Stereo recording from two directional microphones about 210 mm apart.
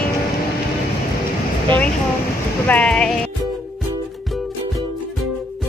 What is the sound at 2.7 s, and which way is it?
Speech, 5° left (ahead or behind).